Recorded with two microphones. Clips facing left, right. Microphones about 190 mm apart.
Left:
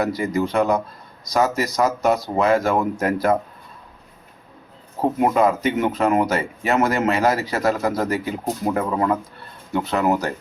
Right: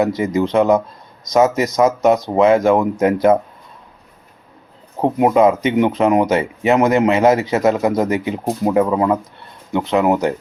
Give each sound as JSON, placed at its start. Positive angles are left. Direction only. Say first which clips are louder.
{"t": 0.0, "sound": "speech", "louder": "right 4 dB", "side_deg": -20}
{"t": 4.9, "sound": "speech", "louder": "right 5 dB", "side_deg": -20}